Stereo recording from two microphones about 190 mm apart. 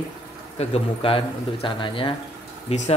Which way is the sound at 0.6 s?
30° left (ahead or behind).